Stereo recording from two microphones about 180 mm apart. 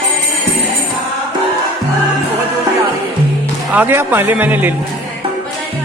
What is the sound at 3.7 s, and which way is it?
A man's voice, 10° right (ahead or behind).